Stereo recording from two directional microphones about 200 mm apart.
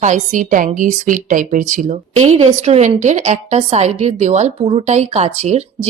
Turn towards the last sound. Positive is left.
turn(degrees=-35)  # may be behind; listen again after turning